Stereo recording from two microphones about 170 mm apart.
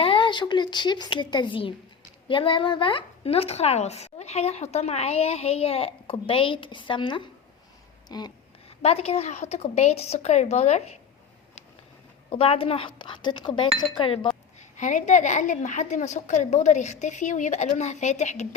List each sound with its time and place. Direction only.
0.0 s speech: 30° left (ahead or behind)
8.8 s speech: 35° left (ahead or behind)
12.3 s speech: 35° left (ahead or behind)
14.8 s a woman's voice: 50° left (ahead or behind)